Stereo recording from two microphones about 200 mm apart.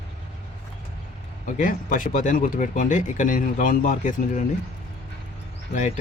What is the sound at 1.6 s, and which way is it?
Speech, 45° left (ahead or behind).